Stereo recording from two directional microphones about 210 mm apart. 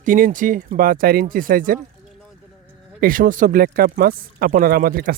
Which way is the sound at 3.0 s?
40° right (ahead or behind).